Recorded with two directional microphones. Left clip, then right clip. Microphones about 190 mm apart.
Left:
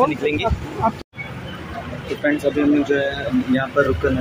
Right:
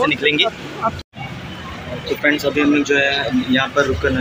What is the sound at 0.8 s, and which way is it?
Speech, 40° left (ahead or behind).